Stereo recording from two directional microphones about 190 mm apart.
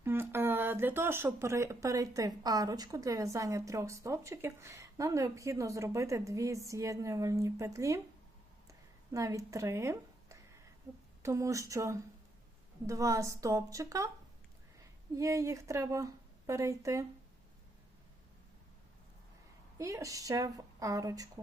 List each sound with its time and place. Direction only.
0.0 s speech: 10° right (ahead or behind)
9.1 s a woman's voice: 15° right (ahead or behind)
15.1 s speech: 15° right (ahead or behind)
19.8 s speech: 15° right (ahead or behind)